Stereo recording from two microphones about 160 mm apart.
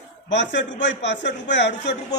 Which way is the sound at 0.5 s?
90° left.